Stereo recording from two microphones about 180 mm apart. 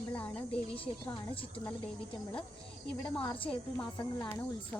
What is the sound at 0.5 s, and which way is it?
Speech, 30° left (ahead or behind).